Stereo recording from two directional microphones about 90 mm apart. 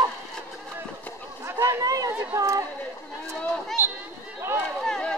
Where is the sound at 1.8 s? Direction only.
45° right (ahead or behind).